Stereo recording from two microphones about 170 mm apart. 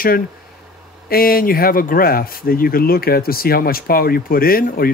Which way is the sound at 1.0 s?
60° left (ahead or behind).